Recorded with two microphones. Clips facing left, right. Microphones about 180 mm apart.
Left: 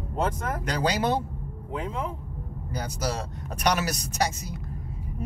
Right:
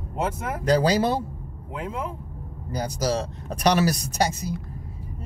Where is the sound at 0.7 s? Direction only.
30° right (ahead or behind).